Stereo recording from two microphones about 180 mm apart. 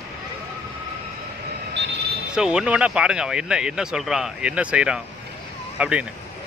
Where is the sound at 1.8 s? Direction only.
70° right (ahead or behind).